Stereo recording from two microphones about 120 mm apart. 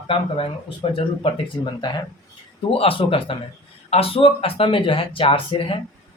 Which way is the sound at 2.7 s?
50° left (ahead or behind).